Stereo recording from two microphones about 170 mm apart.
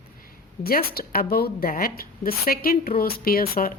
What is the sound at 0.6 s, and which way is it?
A woman's voice, 65° left (ahead or behind).